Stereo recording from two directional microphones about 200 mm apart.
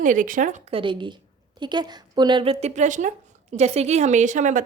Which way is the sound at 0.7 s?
25° right (ahead or behind).